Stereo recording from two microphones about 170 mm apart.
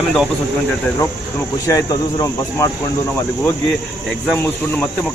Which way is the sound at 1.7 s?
20° left (ahead or behind).